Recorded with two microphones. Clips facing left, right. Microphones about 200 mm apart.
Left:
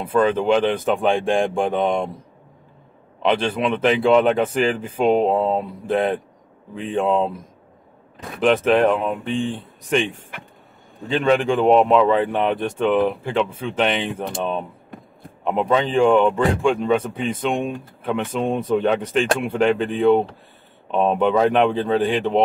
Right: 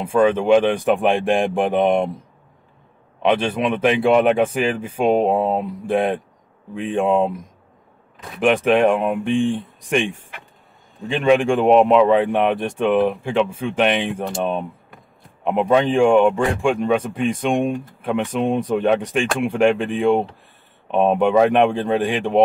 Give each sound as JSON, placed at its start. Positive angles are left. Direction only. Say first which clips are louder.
{"t": 0.0, "sound": "speech", "louder": "right 2 dB", "side_deg": -10}
{"t": 3.2, "sound": "speech", "louder": "right 1 dB", "side_deg": -10}
{"t": 8.4, "sound": "speech", "louder": "even", "side_deg": -10}
{"t": 11.1, "sound": "speech", "louder": "right 2 dB", "side_deg": -10}